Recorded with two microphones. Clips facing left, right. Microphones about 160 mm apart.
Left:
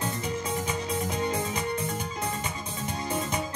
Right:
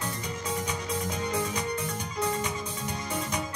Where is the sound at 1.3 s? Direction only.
25° left (ahead or behind).